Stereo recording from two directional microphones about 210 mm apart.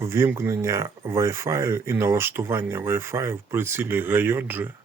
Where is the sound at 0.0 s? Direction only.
10° right (ahead or behind).